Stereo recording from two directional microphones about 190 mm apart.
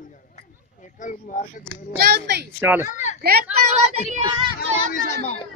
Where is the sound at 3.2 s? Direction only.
55° right (ahead or behind).